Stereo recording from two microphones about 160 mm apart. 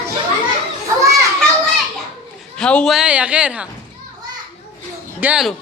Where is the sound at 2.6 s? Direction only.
5° left (ahead or behind).